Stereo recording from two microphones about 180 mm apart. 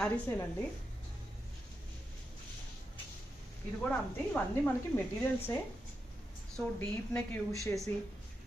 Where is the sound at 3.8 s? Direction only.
10° left (ahead or behind).